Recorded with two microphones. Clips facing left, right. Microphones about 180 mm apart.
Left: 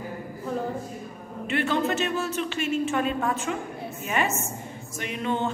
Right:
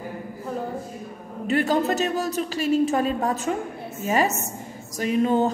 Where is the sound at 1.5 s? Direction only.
40° right (ahead or behind).